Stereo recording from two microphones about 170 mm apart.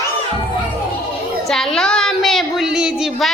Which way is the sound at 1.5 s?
5° left (ahead or behind).